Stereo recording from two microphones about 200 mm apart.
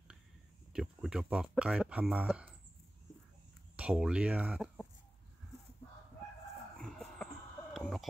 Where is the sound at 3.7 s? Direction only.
5° right (ahead or behind).